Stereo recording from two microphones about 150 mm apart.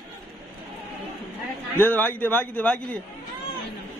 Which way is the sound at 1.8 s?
10° left (ahead or behind).